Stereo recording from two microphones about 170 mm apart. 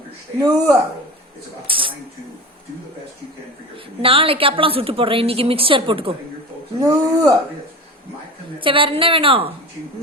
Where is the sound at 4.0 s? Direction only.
30° right (ahead or behind).